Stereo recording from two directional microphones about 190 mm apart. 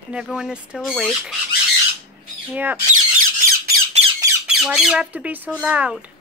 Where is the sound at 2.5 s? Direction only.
10° right (ahead or behind).